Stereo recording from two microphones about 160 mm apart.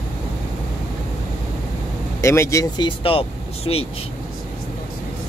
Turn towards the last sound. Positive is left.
turn(degrees=35)  # may be behind; listen again after turning